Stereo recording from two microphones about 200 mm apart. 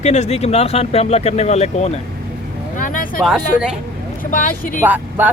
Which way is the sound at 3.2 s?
Centre (ahead or behind).